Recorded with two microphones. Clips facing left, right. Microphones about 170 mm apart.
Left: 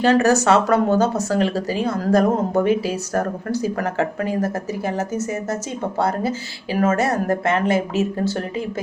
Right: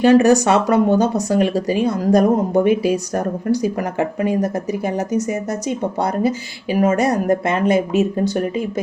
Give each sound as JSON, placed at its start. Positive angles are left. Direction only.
{"t": 0.0, "sound": "speech", "side_deg": -15}